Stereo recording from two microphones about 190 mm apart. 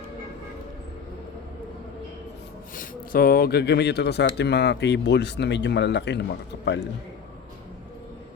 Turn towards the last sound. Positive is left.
turn(degrees=60)  # may be behind; listen again after turning